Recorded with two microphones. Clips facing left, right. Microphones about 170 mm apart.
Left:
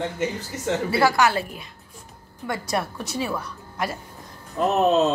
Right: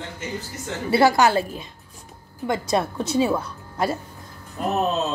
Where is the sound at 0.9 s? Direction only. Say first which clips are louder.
Right 4 dB; 20° right (ahead or behind).